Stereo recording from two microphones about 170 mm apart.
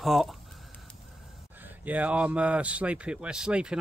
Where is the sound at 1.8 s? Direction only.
10° right (ahead or behind).